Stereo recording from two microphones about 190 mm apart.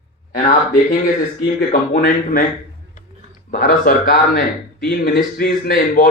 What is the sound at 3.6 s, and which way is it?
Speech, 50° left (ahead or behind).